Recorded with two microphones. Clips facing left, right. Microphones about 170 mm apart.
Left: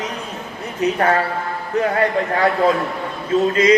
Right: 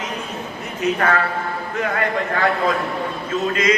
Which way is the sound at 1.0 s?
35° left (ahead or behind).